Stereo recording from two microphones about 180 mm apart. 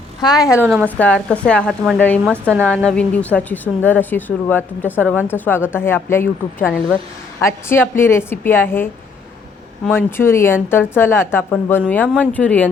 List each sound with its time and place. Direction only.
0.2 s a woman's voice: 20° left (ahead or behind)